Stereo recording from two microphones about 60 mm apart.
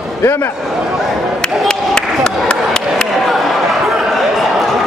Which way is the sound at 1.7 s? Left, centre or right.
Centre.